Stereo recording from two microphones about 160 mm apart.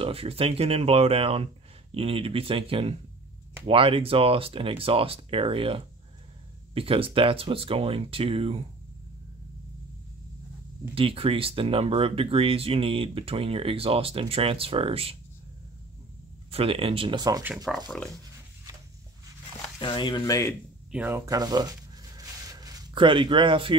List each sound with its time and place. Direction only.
0.0 s speech: 35° right (ahead or behind)
11.0 s speech: 35° right (ahead or behind)
16.4 s speech: 35° right (ahead or behind)
17.7 s speech: centre (ahead or behind)
19.8 s speech: 30° left (ahead or behind)
20.9 s speech: 10° right (ahead or behind)
21.3 s a sound: 25° right (ahead or behind)